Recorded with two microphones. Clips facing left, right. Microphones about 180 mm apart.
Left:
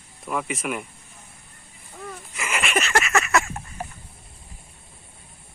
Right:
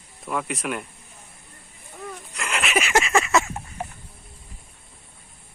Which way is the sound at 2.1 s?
Centre (ahead or behind).